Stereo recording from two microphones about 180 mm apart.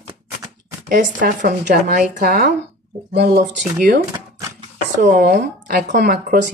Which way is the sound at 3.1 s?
70° right (ahead or behind).